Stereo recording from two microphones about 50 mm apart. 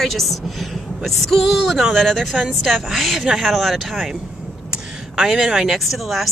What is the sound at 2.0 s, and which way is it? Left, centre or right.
Speech, centre.